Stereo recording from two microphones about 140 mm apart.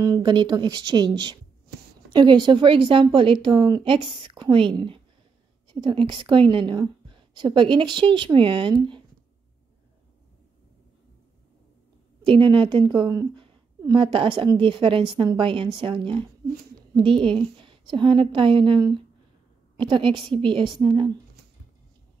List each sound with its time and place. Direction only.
0.2 s a woman's voice: 35° right (ahead or behind)
12.3 s a woman's voice: 35° right (ahead or behind)